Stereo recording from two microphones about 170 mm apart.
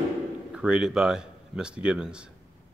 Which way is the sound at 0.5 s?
5° right (ahead or behind).